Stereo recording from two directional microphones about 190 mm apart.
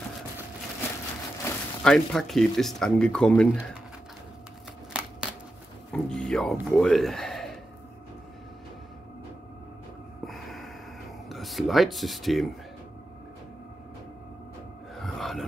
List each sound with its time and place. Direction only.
1.4 s speech: 5° left (ahead or behind)
4.9 s a sound: 5° right (ahead or behind)
5.9 s speech: 5° left (ahead or behind)
10.2 s snort: centre (ahead or behind)
11.2 s speech: centre (ahead or behind)
15.0 s a sound: centre (ahead or behind)